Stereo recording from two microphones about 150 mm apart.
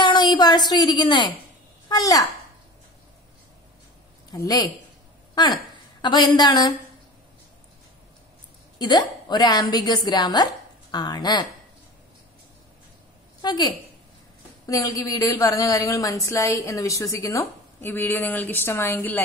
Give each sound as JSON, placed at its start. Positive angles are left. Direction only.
{"t": 0.0, "sound": "a woman's voice", "side_deg": 30}
{"t": 4.3, "sound": "a woman's voice", "side_deg": 25}
{"t": 6.0, "sound": "a woman's voice", "side_deg": 30}
{"t": 8.7, "sound": "a woman's voice", "side_deg": 30}
{"t": 13.4, "sound": "a woman's voice", "side_deg": 30}